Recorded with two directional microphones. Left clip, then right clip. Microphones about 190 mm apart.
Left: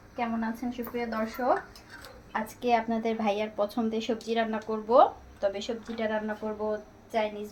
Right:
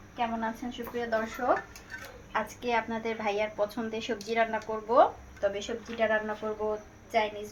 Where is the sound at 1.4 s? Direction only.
25° left (ahead or behind).